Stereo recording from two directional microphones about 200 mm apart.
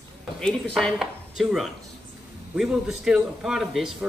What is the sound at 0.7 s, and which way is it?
Speech, centre (ahead or behind).